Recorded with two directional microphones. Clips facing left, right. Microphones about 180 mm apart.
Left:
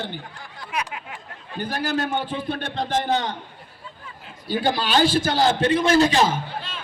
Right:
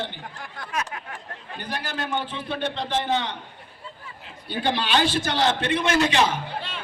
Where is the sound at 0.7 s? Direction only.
15° left (ahead or behind).